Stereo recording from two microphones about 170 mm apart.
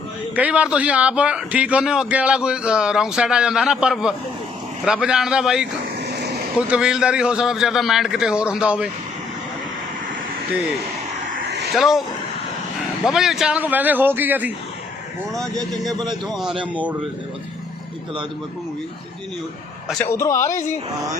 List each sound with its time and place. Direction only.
0.3 s a man's voice: 10° right (ahead or behind)
6.7 s a man's voice: 5° right (ahead or behind)
11.7 s a man's voice: centre (ahead or behind)
13.1 s a man's voice: centre (ahead or behind)
16.3 s a man's voice: centre (ahead or behind)
20.1 s speech: 15° left (ahead or behind)